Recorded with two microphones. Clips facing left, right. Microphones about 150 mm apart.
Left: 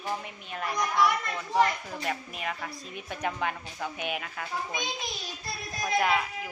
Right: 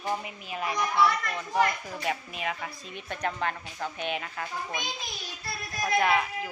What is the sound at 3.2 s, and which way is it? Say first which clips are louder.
Speech: even; 10° left (ahead or behind).